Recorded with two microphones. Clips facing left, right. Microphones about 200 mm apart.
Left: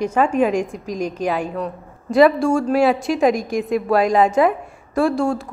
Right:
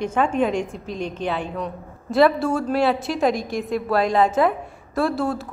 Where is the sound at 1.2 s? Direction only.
10° left (ahead or behind).